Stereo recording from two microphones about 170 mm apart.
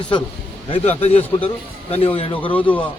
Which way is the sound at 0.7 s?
35° left (ahead or behind).